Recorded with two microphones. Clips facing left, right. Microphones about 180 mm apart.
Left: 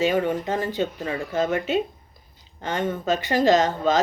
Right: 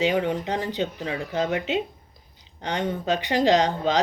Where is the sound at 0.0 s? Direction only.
20° right (ahead or behind).